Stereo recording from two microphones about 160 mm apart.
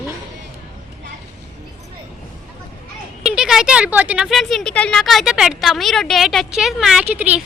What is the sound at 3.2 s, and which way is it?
Speech, centre (ahead or behind).